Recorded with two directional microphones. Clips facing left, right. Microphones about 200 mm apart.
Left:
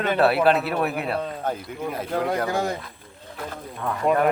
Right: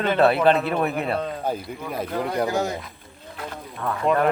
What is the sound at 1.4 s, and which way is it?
Speech, 10° right (ahead or behind).